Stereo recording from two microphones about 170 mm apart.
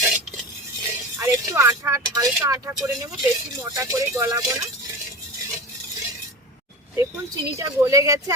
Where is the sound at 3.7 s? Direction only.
15° right (ahead or behind).